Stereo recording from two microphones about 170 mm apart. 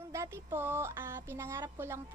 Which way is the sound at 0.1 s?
15° right (ahead or behind).